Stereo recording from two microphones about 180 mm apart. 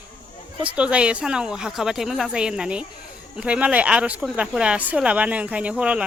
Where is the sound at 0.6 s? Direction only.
5° right (ahead or behind).